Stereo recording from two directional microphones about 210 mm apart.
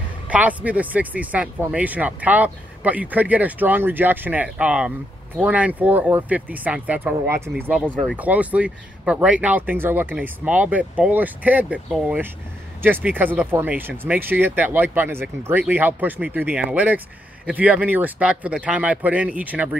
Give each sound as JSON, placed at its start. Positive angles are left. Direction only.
{"t": 0.3, "sound": "speech", "side_deg": -5}